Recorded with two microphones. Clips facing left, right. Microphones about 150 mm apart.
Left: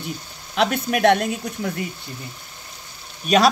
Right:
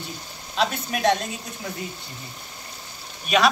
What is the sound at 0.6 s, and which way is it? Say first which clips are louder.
Speech: left 5 dB; 65° left (ahead or behind).